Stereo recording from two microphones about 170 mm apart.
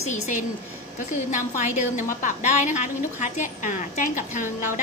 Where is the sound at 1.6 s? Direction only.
45° left (ahead or behind).